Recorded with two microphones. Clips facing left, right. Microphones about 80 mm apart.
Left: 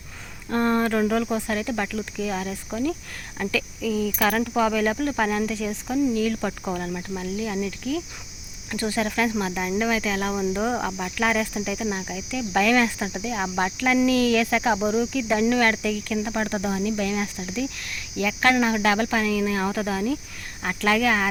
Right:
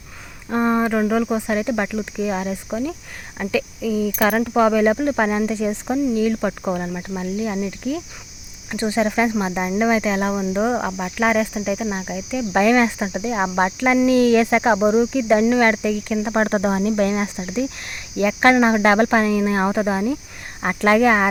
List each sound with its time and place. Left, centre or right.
0.5 s cricket: centre
16.3 s speech: right